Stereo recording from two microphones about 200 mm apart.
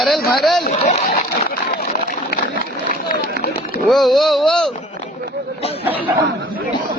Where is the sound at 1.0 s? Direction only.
50° left (ahead or behind).